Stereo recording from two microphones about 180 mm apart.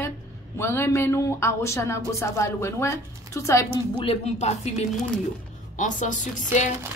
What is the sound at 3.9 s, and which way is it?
Speech, 35° left (ahead or behind).